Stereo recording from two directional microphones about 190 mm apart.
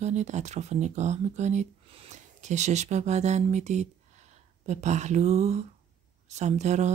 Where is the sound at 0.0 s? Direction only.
35° right (ahead or behind).